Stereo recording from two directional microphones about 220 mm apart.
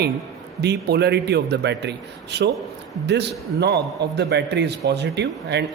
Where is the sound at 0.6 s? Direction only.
50° right (ahead or behind).